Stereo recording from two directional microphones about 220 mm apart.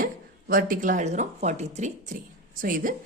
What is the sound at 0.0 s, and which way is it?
A woman's voice, 40° right (ahead or behind).